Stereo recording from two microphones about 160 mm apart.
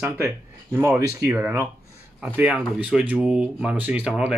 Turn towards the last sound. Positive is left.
turn(degrees=-5)  # may be behind; listen again after turning